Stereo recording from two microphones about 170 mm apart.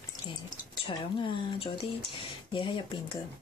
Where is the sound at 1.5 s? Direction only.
35° left (ahead or behind).